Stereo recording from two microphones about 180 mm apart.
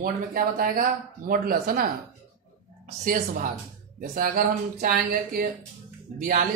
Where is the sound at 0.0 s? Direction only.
55° right (ahead or behind).